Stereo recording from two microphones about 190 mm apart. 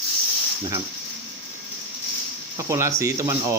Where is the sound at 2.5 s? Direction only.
15° right (ahead or behind).